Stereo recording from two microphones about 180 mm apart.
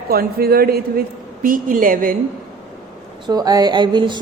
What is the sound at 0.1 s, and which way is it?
Speech, 55° right (ahead or behind).